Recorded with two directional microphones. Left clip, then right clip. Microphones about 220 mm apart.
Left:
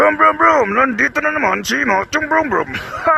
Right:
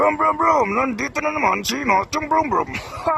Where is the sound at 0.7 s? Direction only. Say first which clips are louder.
Left 6 dB; 40° left (ahead or behind).